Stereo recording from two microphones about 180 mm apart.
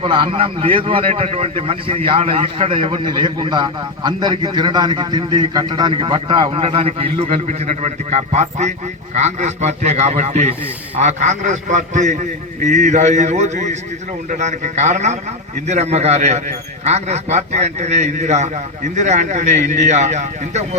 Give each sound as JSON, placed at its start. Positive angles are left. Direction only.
{"t": 0.0, "sound": "a man's voice", "side_deg": -30}